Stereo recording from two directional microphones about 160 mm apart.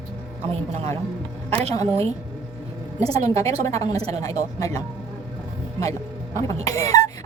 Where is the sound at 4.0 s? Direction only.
40° right (ahead or behind).